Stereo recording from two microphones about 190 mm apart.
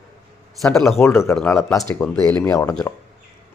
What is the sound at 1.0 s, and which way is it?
A man's voice, 15° left (ahead or behind).